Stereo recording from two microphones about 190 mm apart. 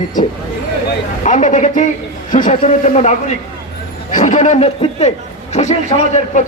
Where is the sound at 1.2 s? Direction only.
40° left (ahead or behind).